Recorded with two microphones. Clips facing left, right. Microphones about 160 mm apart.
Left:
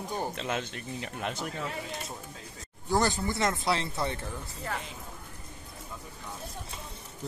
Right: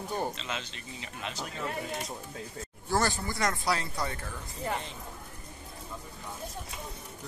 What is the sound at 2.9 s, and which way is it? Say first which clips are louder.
Speech: left 2 dB; 20° left (ahead or behind).